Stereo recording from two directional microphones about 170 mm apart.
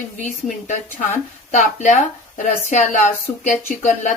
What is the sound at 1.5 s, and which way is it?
Speech, 45° left (ahead or behind).